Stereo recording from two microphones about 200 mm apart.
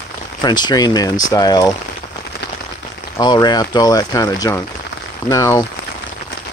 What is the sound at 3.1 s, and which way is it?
Speech, 20° left (ahead or behind).